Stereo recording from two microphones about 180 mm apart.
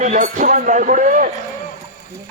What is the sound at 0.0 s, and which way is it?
Speech, 45° right (ahead or behind).